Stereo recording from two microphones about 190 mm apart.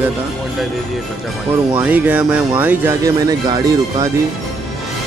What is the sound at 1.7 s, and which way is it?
Speech, 10° right (ahead or behind).